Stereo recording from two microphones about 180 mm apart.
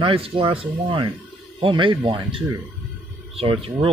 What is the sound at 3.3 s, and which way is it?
Speech, 30° right (ahead or behind).